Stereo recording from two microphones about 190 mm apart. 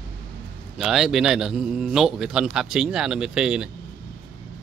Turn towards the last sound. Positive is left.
turn(degrees=-5)  # may be behind; listen again after turning